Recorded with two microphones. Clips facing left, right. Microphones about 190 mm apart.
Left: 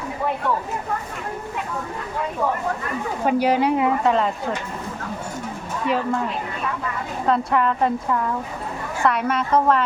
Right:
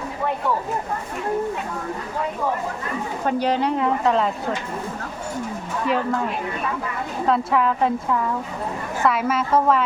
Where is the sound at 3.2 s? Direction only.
10° left (ahead or behind).